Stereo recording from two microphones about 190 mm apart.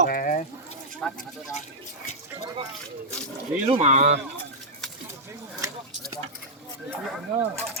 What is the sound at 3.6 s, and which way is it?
Speech, 35° right (ahead or behind).